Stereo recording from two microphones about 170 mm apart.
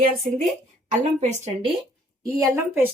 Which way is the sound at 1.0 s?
40° right (ahead or behind).